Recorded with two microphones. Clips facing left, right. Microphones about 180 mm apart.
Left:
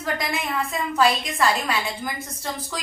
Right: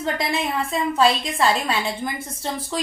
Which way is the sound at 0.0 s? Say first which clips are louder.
Right 3 dB; 30° right (ahead or behind).